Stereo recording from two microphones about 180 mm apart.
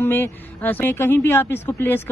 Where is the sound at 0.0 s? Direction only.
10° left (ahead or behind).